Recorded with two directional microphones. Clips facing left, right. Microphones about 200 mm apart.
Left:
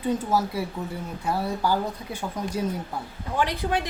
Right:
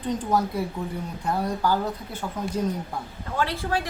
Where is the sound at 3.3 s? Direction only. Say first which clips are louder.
Left 1 dB; 15° left (ahead or behind).